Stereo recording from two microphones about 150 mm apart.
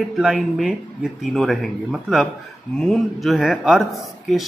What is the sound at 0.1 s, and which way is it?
Speech, 5° right (ahead or behind).